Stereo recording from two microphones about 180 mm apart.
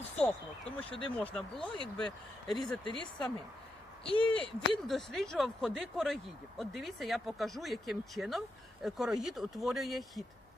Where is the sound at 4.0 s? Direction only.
30° left (ahead or behind).